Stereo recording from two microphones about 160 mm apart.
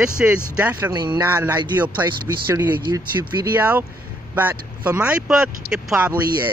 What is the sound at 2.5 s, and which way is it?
Speech, 25° right (ahead or behind).